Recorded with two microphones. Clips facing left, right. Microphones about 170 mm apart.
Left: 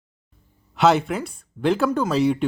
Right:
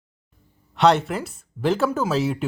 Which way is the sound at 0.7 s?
Centre (ahead or behind).